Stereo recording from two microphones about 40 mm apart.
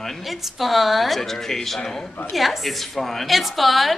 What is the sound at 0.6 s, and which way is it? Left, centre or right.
A woman's voice, centre.